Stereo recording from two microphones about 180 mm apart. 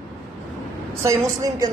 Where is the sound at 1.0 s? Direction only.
15° right (ahead or behind).